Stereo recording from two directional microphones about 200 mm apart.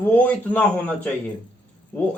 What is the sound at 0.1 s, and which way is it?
Speech, 5° left (ahead or behind).